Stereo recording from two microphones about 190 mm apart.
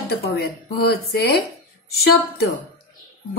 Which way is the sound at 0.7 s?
55° left (ahead or behind).